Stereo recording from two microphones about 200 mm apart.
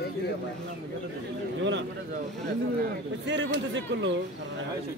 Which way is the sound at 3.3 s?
65° right (ahead or behind).